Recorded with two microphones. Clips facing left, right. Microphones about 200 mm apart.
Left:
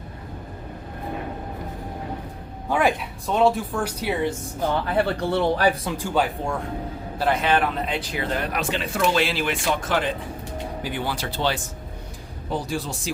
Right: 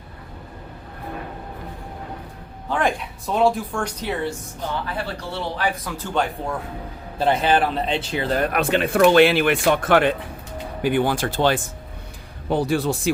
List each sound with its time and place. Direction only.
2.6 s speech: 10° left (ahead or behind)
5.0 s speech: 55° left (ahead or behind)
6.0 s speech: 5° left (ahead or behind)
7.2 s speech: 30° right (ahead or behind)
8.4 s speech: 55° right (ahead or behind)
12.5 s speech: 60° right (ahead or behind)